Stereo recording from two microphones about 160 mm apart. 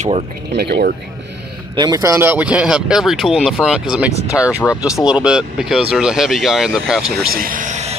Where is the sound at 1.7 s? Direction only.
25° right (ahead or behind); by 7.3 s 5° right (ahead or behind).